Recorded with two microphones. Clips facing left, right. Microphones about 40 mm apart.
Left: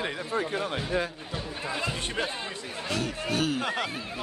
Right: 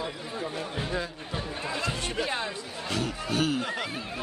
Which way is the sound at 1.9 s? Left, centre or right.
Left.